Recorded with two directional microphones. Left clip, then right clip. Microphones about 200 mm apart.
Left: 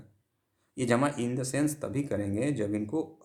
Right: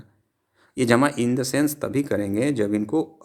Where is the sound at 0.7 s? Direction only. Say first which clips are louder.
Right 8 dB; 40° right (ahead or behind).